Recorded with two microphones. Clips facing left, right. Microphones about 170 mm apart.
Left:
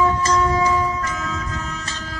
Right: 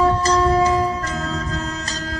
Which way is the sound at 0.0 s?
35° right (ahead or behind).